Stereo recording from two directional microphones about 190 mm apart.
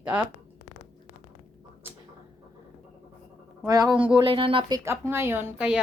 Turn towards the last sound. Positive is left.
turn(degrees=-5)  # may be behind; listen again after turning